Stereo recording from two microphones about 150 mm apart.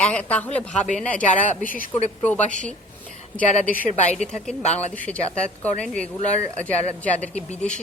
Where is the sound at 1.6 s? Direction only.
65° left (ahead or behind).